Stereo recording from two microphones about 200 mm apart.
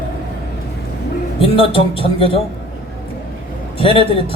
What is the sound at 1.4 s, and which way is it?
A woman's voice, 25° left (ahead or behind).